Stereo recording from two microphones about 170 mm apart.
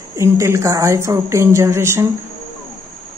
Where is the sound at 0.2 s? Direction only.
15° right (ahead or behind).